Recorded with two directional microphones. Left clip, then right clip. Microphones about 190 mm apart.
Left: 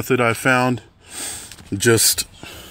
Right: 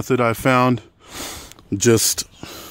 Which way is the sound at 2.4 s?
60° right (ahead or behind).